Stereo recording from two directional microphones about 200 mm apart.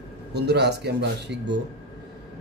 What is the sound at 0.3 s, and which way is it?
Speech, 55° right (ahead or behind).